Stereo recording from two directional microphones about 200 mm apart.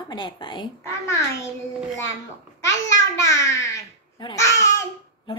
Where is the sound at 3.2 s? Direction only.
15° left (ahead or behind).